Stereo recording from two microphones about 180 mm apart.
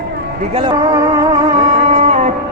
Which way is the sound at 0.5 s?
25° right (ahead or behind).